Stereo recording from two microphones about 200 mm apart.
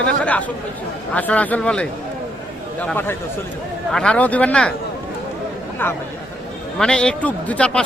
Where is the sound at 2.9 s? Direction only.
10° left (ahead or behind).